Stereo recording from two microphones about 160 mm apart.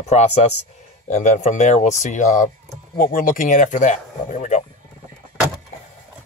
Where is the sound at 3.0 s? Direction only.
60° left (ahead or behind).